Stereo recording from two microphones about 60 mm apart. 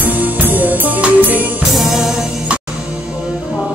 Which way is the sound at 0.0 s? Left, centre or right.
Right.